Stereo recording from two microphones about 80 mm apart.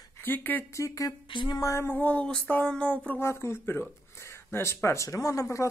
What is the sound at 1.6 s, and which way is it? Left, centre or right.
Speech, left.